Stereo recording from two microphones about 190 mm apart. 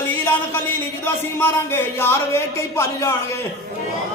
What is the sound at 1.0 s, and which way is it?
Speech, 10° left (ahead or behind).